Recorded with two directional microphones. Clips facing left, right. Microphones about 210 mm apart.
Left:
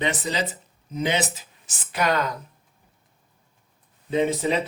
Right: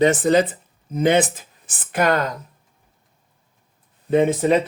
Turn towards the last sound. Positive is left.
turn(degrees=-50)  # may be behind; listen again after turning